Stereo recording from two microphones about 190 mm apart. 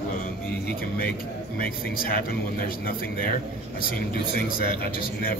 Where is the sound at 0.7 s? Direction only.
55° left (ahead or behind).